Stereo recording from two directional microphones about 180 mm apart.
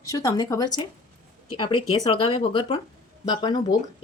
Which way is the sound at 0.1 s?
20° left (ahead or behind).